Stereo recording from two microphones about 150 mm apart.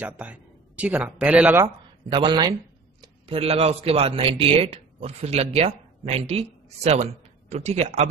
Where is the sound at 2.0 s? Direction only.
30° right (ahead or behind).